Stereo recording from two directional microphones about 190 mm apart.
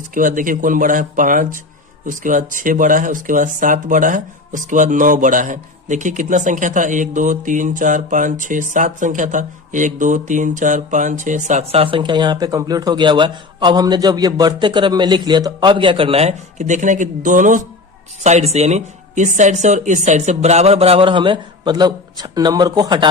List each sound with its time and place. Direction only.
0.1 s speech: 45° right (ahead or behind); by 23.0 s 20° right (ahead or behind)